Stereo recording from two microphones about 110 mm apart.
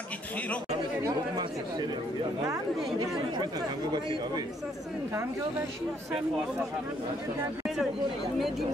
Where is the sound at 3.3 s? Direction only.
40° right (ahead or behind).